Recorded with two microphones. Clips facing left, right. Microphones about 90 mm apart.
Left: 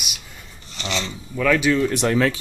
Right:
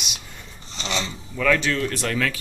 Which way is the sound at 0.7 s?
25° right (ahead or behind).